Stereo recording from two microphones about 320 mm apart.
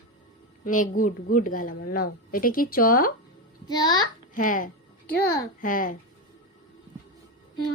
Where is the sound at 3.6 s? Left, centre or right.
Centre.